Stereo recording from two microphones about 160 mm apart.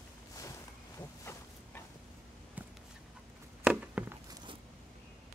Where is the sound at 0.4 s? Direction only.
20° left (ahead or behind).